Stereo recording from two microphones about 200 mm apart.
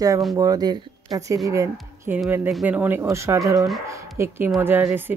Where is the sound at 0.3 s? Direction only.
20° right (ahead or behind).